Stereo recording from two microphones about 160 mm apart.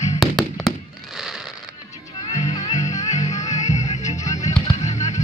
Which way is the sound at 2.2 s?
45° left (ahead or behind).